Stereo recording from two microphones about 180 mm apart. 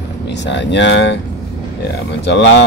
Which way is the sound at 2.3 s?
75° left (ahead or behind).